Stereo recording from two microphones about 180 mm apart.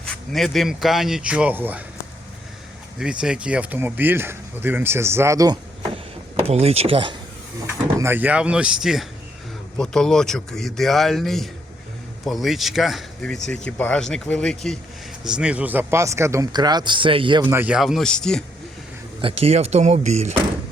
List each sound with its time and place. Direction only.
0.1 s speech: centre (ahead or behind)
3.0 s speech: 5° right (ahead or behind)
6.5 s speech: 35° right (ahead or behind)
7.9 s speech: 10° right (ahead or behind); by 17.4 s 30° right (ahead or behind)
17.4 s speech: 10° right (ahead or behind)
19.2 s speech: 35° right (ahead or behind)